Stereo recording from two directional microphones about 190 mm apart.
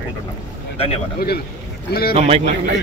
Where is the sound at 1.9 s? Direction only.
55° left (ahead or behind).